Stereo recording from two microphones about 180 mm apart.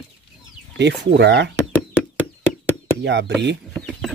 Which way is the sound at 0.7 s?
70° right (ahead or behind).